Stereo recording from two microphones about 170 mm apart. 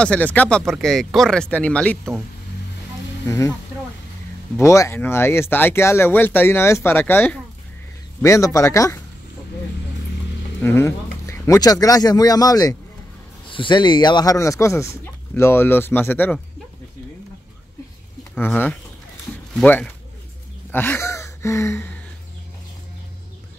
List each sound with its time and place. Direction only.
0.0 s speech: 10° left (ahead or behind)
3.3 s speech: 15° left (ahead or behind)
4.6 s speech: 15° left (ahead or behind)
10.6 s speech: 15° left (ahead or behind)
18.3 s speech: 10° left (ahead or behind)